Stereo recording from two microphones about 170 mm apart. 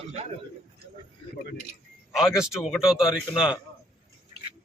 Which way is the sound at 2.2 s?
5° right (ahead or behind).